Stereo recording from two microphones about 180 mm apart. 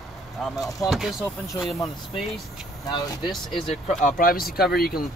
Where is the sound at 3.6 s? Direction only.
40° left (ahead or behind); by 5.0 s 55° left (ahead or behind).